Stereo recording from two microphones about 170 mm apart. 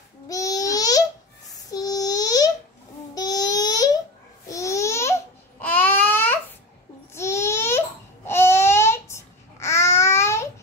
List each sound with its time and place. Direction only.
0.3 s baby cry: 20° left (ahead or behind)
1.5 s child singing: 20° left (ahead or behind)
3.2 s babbling: 20° left (ahead or behind)